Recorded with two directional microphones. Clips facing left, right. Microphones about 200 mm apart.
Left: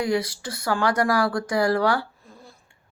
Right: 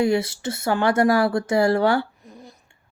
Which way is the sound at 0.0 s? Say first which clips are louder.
Right 4 dB; 25° right (ahead or behind).